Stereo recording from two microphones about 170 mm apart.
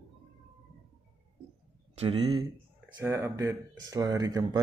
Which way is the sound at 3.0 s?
15° right (ahead or behind).